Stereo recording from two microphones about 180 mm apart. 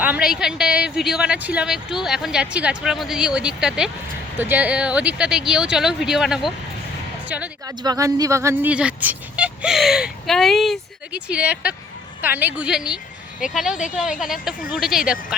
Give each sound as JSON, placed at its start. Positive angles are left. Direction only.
{"t": 0.0, "sound": "a woman's voice", "side_deg": -5}
{"t": 7.8, "sound": "a woman's voice", "side_deg": -20}
{"t": 13.7, "sound": "a woman's voice", "side_deg": 45}
{"t": 14.8, "sound": "a woman's voice", "side_deg": 0}